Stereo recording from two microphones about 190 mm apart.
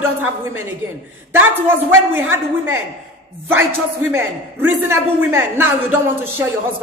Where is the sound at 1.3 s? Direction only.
10° right (ahead or behind).